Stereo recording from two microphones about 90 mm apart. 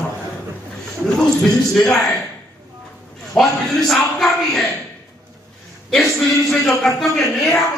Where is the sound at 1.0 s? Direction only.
5° left (ahead or behind).